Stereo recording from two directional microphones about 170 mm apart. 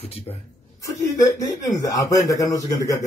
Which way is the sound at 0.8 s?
20° left (ahead or behind).